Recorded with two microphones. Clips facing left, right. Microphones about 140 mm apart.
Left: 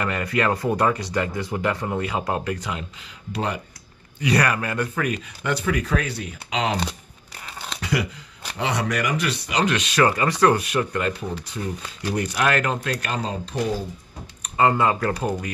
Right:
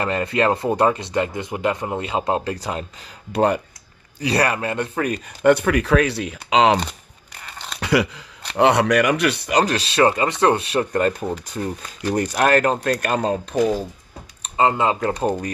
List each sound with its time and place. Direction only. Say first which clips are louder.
0.0 s speech: right 3 dB; 25° right (ahead or behind)
3.3 s speech: right 9 dB; 50° right (ahead or behind)
4.2 s speech: right 1 dB; 30° right (ahead or behind)
5.4 s speech: right 9 dB; 60° right (ahead or behind); by 6.8 s 90° right
7.4 s a sound: left 1 dB; 5° left (ahead or behind)
7.8 s speech: right 6 dB; 85° right
8.5 s speech: right 9 dB; 65° right (ahead or behind)
9.6 s speech: right 2 dB; 35° right (ahead or behind); by 13.6 s 50° right (ahead or behind)
14.4 s speech: right 1 dB; 20° right (ahead or behind)